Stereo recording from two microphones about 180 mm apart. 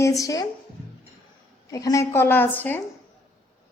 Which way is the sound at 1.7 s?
20° left (ahead or behind).